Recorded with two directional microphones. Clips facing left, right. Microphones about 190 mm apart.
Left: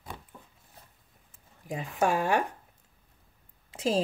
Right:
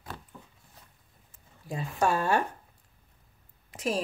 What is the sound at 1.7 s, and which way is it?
Speech, 15° left (ahead or behind).